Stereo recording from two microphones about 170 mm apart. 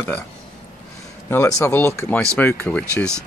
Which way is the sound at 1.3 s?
15° left (ahead or behind).